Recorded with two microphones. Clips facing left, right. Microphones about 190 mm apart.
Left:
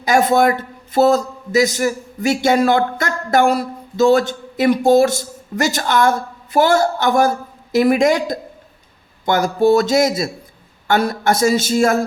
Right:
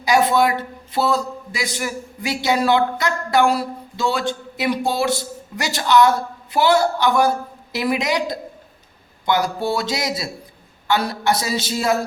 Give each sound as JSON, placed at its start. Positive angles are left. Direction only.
{"t": 0.0, "sound": "a man's voice", "side_deg": 45}